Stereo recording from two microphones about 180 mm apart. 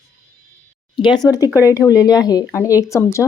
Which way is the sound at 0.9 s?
25° left (ahead or behind).